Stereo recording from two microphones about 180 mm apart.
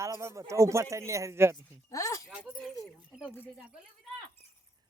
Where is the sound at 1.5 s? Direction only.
20° left (ahead or behind).